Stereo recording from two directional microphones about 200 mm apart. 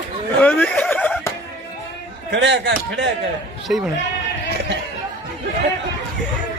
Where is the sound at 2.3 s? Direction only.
60° right (ahead or behind).